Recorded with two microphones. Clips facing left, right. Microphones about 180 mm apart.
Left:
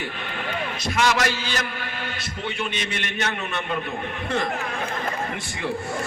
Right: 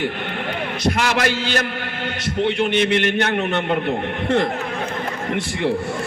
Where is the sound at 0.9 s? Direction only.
65° right (ahead or behind).